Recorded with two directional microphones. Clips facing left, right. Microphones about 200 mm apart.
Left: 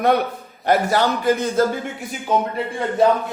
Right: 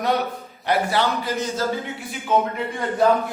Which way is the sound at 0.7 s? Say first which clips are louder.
Left 3 dB; 45° left (ahead or behind).